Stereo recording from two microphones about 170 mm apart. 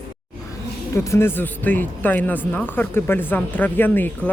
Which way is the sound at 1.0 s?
15° left (ahead or behind).